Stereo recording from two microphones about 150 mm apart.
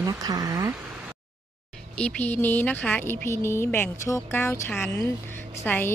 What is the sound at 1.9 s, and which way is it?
A woman's voice, 10° left (ahead or behind).